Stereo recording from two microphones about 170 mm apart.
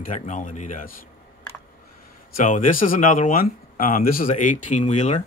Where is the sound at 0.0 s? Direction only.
50° left (ahead or behind).